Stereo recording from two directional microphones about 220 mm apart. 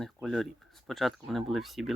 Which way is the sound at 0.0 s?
Centre (ahead or behind).